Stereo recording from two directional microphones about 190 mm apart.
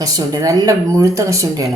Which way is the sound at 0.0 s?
20° right (ahead or behind).